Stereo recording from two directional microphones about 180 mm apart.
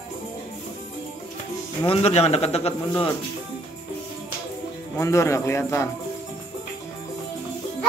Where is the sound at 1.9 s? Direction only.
35° left (ahead or behind).